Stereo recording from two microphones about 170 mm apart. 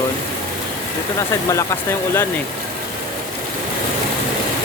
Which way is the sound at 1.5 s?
15° left (ahead or behind).